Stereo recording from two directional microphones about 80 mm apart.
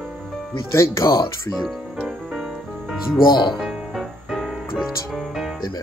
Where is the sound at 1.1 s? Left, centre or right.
Left.